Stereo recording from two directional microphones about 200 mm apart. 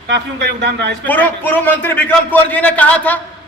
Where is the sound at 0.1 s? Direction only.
60° right (ahead or behind).